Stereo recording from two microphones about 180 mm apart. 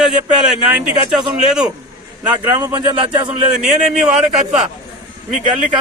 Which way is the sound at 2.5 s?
25° right (ahead or behind).